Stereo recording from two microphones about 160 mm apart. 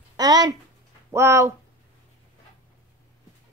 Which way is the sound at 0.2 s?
25° right (ahead or behind).